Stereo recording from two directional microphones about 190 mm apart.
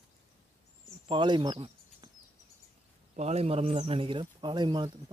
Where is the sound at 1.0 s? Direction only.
25° right (ahead or behind).